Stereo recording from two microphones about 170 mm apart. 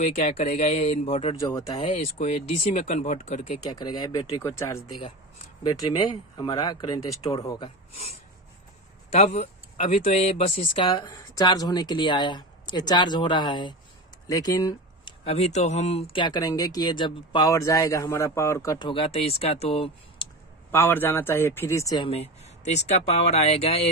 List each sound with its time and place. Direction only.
0.0 s speech: 45° left (ahead or behind)
1.4 s speech: 20° left (ahead or behind)
1.9 s speech: 45° left (ahead or behind)
3.7 s a man's voice: 25° left (ahead or behind)
5.8 s speech: 25° left (ahead or behind)
9.1 s speech: 40° left (ahead or behind)
10.7 s speech: 25° left (ahead or behind)
14.2 s a sound: 20° left (ahead or behind)
15.2 s speech: 40° left (ahead or behind)
20.7 s a man's voice: 10° left (ahead or behind); by 23.9 s 35° left (ahead or behind)